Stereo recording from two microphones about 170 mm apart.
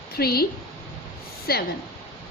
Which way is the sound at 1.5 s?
65° left (ahead or behind).